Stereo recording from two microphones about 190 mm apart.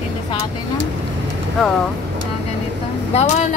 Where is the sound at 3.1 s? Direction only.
40° left (ahead or behind).